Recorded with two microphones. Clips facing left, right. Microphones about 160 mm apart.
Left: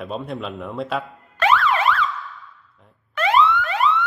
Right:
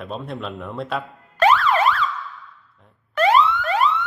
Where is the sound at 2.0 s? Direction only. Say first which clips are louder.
Even; centre (ahead or behind).